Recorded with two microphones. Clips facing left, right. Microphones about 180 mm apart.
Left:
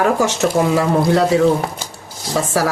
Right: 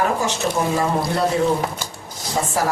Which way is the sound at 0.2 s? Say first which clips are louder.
Left 6 dB; 75° left (ahead or behind).